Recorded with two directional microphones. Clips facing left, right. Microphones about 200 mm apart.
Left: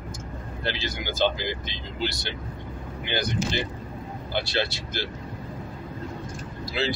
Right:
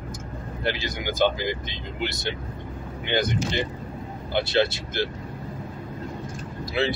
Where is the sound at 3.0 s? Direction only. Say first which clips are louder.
Right 3 dB; 20° right (ahead or behind).